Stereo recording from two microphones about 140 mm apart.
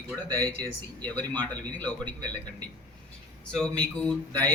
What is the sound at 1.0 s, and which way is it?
A man's voice, 10° left (ahead or behind).